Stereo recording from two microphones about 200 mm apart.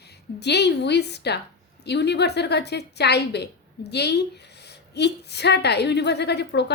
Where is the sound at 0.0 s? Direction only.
55° left (ahead or behind).